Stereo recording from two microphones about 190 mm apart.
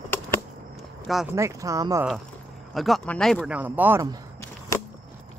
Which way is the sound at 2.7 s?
Centre (ahead or behind).